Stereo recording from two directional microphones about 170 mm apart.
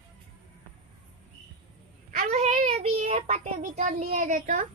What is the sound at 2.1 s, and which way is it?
A child's voice, 45° right (ahead or behind).